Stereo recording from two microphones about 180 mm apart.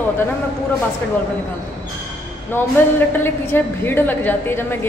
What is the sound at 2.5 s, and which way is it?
A woman's voice, 15° left (ahead or behind).